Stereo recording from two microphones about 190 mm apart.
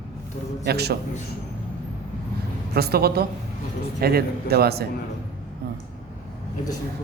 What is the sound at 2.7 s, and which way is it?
Speech, 55° right (ahead or behind).